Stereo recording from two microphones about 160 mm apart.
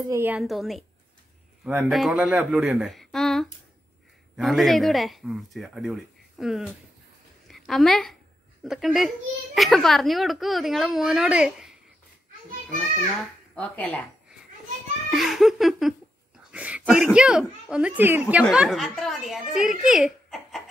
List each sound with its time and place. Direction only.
0.1 s a woman's voice: 15° right (ahead or behind)
0.4 s a woman's voice: centre (ahead or behind)
13.6 s speech: 10° left (ahead or behind)
15.0 s speech: centre (ahead or behind)
16.5 s a sound: 10° right (ahead or behind)
16.9 s speech: 5° right (ahead or behind)
19.9 s giggle: centre (ahead or behind)